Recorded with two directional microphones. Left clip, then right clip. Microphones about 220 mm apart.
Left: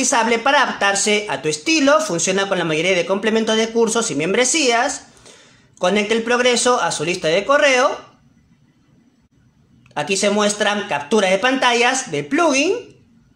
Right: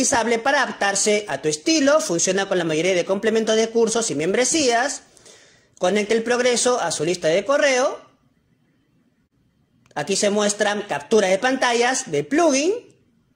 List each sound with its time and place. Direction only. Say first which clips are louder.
0.0 s speech: left 3 dB; 25° right (ahead or behind)
9.9 s speech: left 3 dB; 25° right (ahead or behind)